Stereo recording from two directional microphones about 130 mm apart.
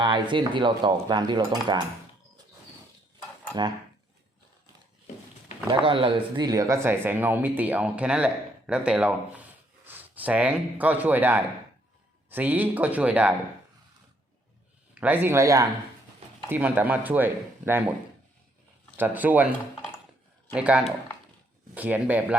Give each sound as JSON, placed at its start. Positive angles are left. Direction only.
{"t": 0.0, "sound": "speech", "side_deg": -35}
{"t": 5.8, "sound": "speech", "side_deg": -40}
{"t": 6.8, "sound": "a man's voice", "side_deg": -15}
{"t": 15.0, "sound": "speech", "side_deg": -15}
{"t": 16.5, "sound": "speech", "side_deg": -15}
{"t": 18.9, "sound": "speech", "side_deg": -15}
{"t": 20.5, "sound": "speech", "side_deg": -10}